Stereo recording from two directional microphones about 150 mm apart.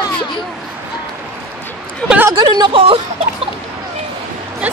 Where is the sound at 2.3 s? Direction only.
25° right (ahead or behind).